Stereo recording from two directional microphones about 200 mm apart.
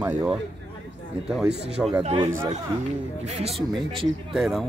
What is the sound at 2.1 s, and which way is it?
Speech, 15° right (ahead or behind).